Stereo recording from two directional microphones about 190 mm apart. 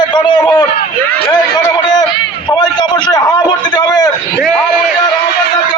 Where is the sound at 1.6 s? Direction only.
20° left (ahead or behind).